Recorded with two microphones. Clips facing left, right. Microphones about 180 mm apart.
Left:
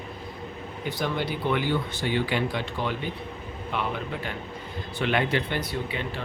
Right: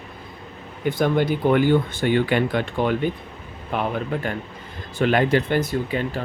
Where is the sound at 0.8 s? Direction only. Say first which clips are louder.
Right 9 dB; 50° right (ahead or behind).